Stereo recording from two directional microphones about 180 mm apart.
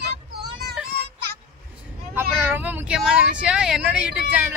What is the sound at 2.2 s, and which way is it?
Vehicle, 10° right (ahead or behind).